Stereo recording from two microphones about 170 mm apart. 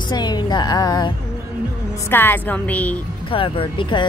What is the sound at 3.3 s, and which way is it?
Speech, 30° left (ahead or behind).